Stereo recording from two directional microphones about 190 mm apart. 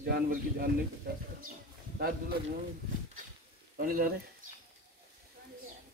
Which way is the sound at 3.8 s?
50° right (ahead or behind).